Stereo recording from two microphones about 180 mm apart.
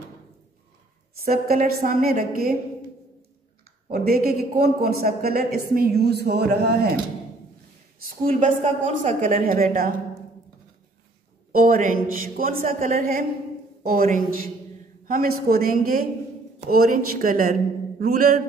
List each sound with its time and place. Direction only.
1.2 s a woman's voice: 55° right (ahead or behind)
3.9 s a woman's voice: 55° right (ahead or behind)
8.3 s a woman's voice: 40° right (ahead or behind)
11.5 s a woman's voice: 50° right (ahead or behind)